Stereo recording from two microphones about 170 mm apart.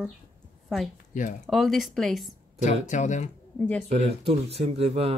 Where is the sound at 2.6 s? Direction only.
45° left (ahead or behind).